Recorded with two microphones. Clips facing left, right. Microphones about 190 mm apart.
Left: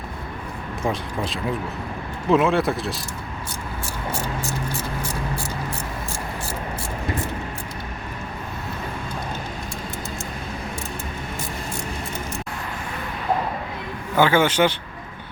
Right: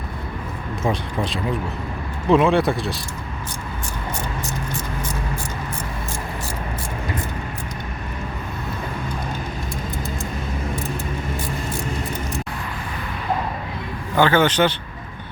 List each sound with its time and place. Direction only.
0.9 s speech: centre (ahead or behind)
14.2 s speech: 10° left (ahead or behind)